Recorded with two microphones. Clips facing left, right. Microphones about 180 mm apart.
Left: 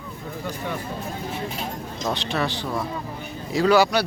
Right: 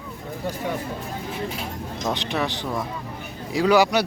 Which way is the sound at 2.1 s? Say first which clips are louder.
Even; 15° right (ahead or behind).